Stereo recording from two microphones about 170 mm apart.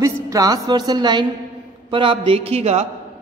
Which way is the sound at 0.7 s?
25° right (ahead or behind).